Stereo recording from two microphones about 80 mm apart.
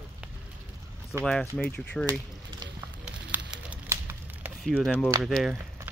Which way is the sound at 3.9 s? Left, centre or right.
Right.